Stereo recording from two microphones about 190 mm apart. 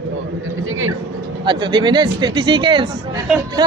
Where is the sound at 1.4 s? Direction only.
25° right (ahead or behind).